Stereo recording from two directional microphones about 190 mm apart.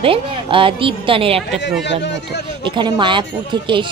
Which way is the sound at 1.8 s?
65° left (ahead or behind).